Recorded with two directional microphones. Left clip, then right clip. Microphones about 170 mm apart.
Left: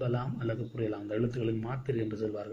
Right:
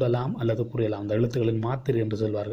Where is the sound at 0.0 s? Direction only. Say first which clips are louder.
Right 8 dB; 40° right (ahead or behind).